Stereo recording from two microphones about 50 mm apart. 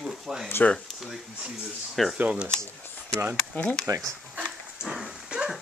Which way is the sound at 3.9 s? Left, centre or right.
Right.